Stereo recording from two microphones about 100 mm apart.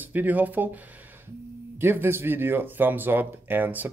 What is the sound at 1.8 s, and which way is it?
Speech, 20° right (ahead or behind).